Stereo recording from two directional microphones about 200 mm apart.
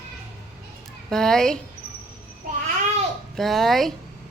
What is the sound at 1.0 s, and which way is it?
Speech, centre (ahead or behind).